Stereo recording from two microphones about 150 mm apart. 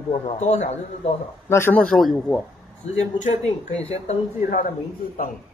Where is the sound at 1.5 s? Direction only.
15° left (ahead or behind).